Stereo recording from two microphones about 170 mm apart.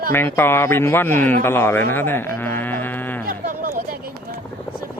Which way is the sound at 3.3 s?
55° right (ahead or behind).